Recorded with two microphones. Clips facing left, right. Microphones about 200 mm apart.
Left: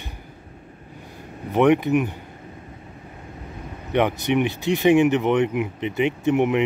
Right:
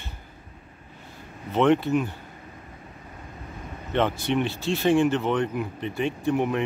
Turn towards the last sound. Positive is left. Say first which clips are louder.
# left 5 dB
turn(degrees=20)  # may be behind; listen again after turning